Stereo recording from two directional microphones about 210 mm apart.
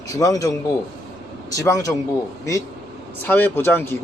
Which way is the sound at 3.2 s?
10° left (ahead or behind).